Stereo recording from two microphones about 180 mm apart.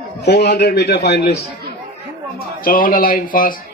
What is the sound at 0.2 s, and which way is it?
A man's voice, 70° left (ahead or behind).